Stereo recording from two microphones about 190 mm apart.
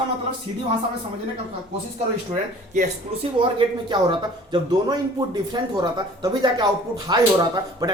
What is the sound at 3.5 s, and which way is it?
Speech, 25° right (ahead or behind).